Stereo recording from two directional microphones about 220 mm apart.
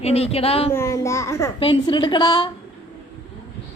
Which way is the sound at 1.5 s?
25° left (ahead or behind).